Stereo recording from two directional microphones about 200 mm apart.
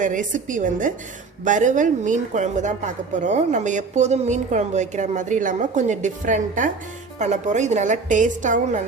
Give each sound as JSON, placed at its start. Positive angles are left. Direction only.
{"t": 0.0, "sound": "a woman's voice", "side_deg": -40}